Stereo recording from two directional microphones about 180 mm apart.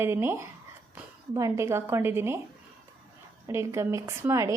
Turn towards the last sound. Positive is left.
turn(degrees=-15)  # may be behind; listen again after turning